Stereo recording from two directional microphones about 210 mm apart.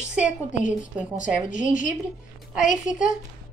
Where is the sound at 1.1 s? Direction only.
40° left (ahead or behind).